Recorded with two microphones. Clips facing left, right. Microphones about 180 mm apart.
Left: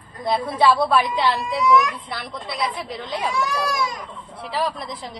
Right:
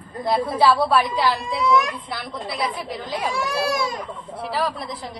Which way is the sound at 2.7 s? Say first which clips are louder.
Right 1 dB; centre (ahead or behind).